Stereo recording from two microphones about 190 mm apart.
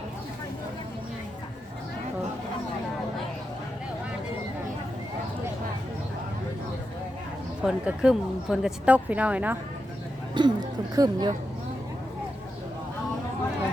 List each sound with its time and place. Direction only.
7.6 s a woman's voice: 5° right (ahead or behind)
10.4 s speech: 25° right (ahead or behind)